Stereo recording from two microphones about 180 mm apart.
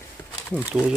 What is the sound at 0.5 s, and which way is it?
Speech, 5° right (ahead or behind).